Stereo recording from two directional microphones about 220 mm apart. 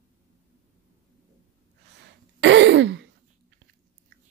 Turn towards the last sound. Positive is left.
turn(degrees=-55)  # may be behind; listen again after turning